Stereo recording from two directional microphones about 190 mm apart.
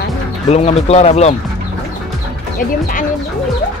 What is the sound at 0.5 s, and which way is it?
Speech, 35° left (ahead or behind).